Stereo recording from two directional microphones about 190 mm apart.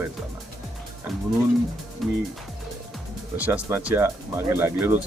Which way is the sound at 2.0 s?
Centre (ahead or behind).